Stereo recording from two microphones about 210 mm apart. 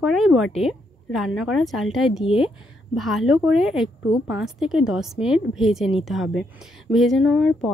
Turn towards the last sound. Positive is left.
turn(degrees=0)  # may be behind; listen again after turning